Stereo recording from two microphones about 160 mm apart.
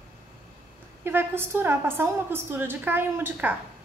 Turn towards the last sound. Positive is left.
turn(degrees=-15)  # may be behind; listen again after turning